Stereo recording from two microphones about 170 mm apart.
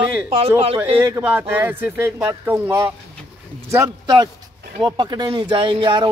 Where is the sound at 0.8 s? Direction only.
15° right (ahead or behind).